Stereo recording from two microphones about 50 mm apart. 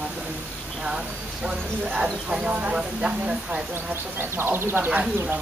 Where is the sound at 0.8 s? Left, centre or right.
Centre.